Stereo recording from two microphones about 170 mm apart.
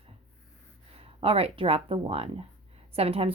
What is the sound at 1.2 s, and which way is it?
A woman's voice, 35° right (ahead or behind).